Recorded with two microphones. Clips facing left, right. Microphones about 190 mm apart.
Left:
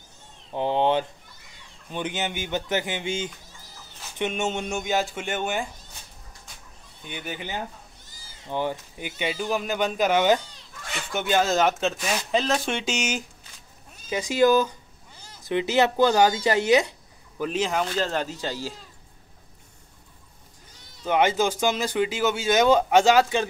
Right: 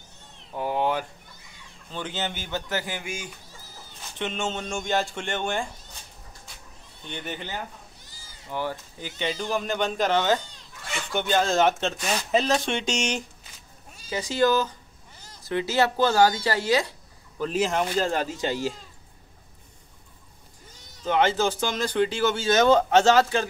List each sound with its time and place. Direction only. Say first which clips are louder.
0.5 s cat: left 3 dB; 25° left (ahead or behind)
1.9 s speech: left 2 dB; 15° left (ahead or behind)
4.2 s speech: left 3 dB; 15° left (ahead or behind)
7.1 s speech: even; 10° left (ahead or behind)
8.5 s speech: left 3 dB; 20° left (ahead or behind); by 13.2 s 5° left (ahead or behind)
14.0 s speech: left 3 dB; 20° left (ahead or behind)
17.5 s speech: right 1 dB; centre (ahead or behind)
21.0 s speech: left 1 dB; 10° left (ahead or behind)